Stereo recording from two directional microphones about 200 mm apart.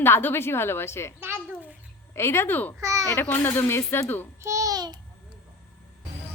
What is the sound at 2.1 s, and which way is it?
Speech, 15° left (ahead or behind).